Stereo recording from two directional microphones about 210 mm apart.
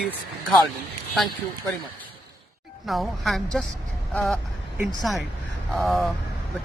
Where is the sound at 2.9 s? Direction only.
Centre (ahead or behind).